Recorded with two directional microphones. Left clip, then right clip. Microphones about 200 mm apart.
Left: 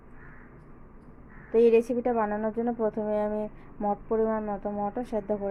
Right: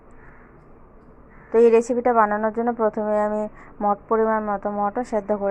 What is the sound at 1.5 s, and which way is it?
Speech, centre (ahead or behind).